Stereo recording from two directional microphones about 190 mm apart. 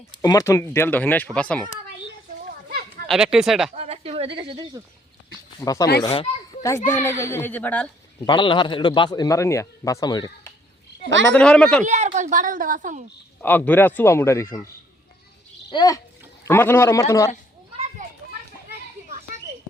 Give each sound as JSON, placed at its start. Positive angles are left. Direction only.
{"t": 0.1, "sound": "speech", "side_deg": 20}
{"t": 2.4, "sound": "children playing", "side_deg": -50}
{"t": 3.1, "sound": "speech", "side_deg": -5}
{"t": 3.8, "sound": "speech", "side_deg": -30}
{"t": 5.5, "sound": "a man's voice", "side_deg": 20}
{"t": 8.3, "sound": "a man's voice", "side_deg": 25}
{"t": 11.3, "sound": "speech", "side_deg": 5}
{"t": 12.1, "sound": "a woman's voice", "side_deg": -40}
{"t": 13.4, "sound": "speech", "side_deg": 10}
{"t": 15.7, "sound": "a man's voice", "side_deg": 20}